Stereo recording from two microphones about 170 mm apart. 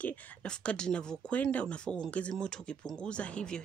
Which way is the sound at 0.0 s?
5° left (ahead or behind).